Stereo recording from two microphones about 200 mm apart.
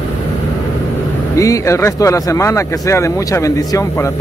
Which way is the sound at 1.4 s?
15° left (ahead or behind).